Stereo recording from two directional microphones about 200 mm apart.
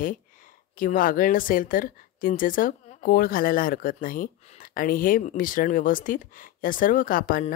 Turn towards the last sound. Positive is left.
turn(degrees=45)  # may be behind; listen again after turning